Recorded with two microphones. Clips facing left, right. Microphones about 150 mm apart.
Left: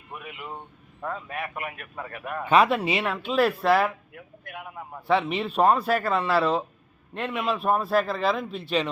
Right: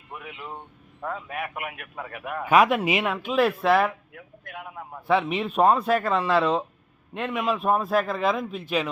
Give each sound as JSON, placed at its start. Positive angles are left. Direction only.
{"t": 0.1, "sound": "speech", "side_deg": 15}
{"t": 1.0, "sound": "a man's voice", "side_deg": -5}
{"t": 3.2, "sound": "a man's voice", "side_deg": 0}